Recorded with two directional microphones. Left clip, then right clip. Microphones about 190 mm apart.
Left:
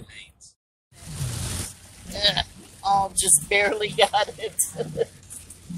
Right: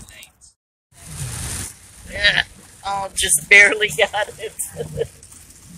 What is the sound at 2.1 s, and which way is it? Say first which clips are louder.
Sheep: right 6 dB; 10° left (ahead or behind).